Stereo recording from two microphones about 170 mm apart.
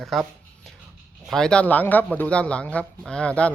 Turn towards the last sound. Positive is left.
turn(degrees=5)  # may be behind; listen again after turning